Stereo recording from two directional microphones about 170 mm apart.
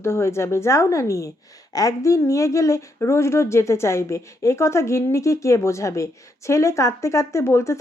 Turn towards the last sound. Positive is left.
turn(degrees=15)  # may be behind; listen again after turning